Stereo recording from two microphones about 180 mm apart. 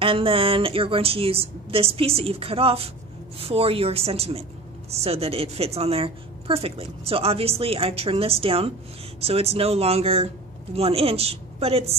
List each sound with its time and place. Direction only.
0.0 s a woman's voice: 30° right (ahead or behind)